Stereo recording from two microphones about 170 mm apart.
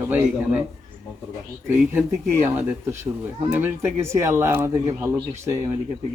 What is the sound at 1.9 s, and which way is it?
Speech, 10° right (ahead or behind).